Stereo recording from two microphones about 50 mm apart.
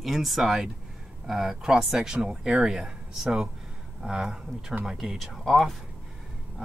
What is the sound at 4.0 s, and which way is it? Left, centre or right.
Speech, centre.